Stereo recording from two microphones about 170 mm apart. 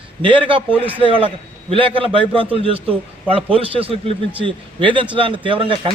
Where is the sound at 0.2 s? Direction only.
30° right (ahead or behind).